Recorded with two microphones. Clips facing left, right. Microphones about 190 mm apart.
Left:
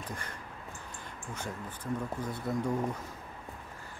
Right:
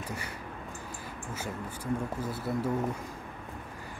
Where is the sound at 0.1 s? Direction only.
10° right (ahead or behind).